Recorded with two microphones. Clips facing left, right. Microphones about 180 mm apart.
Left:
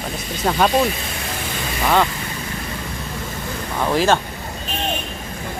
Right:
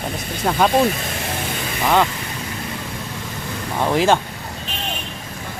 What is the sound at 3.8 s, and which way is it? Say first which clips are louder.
Speech: right 1 dB; 15° right (ahead or behind).